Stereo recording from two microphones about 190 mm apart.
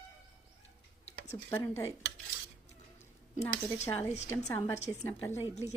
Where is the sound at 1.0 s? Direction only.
35° left (ahead or behind).